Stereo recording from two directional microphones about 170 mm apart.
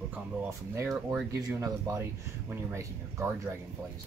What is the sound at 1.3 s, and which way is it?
Speech, 20° right (ahead or behind).